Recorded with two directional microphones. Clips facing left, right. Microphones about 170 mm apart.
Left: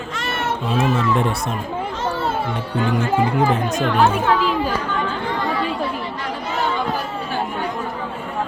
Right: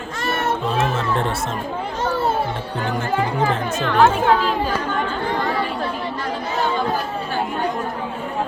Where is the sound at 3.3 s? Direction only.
15° left (ahead or behind).